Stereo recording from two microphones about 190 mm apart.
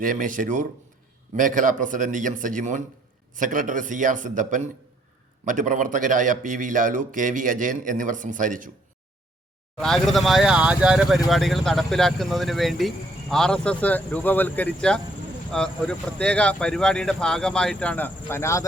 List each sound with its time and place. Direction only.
0.0 s a man's voice: 45° right (ahead or behind)
9.8 s speech: centre (ahead or behind)